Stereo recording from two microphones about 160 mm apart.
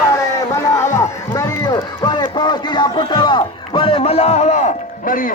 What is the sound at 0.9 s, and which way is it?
Run, 20° left (ahead or behind).